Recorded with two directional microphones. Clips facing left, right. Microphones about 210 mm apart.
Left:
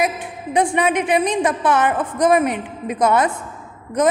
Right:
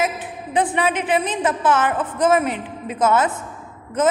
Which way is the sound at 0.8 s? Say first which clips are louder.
Left 2 dB; 15° left (ahead or behind).